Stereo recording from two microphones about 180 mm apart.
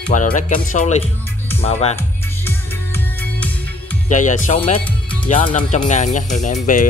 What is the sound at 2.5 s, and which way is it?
Music, 10° left (ahead or behind).